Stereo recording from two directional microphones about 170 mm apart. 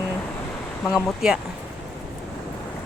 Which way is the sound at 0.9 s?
5° right (ahead or behind).